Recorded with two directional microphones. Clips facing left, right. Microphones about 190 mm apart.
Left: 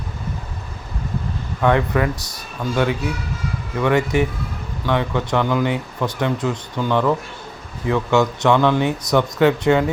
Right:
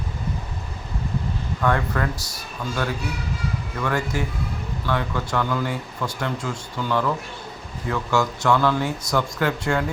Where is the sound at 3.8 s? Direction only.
20° left (ahead or behind).